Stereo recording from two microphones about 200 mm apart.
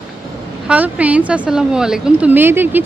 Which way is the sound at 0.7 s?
5° right (ahead or behind).